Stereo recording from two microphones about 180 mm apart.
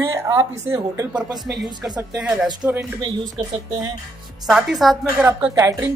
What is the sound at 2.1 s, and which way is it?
Speech, 5° right (ahead or behind).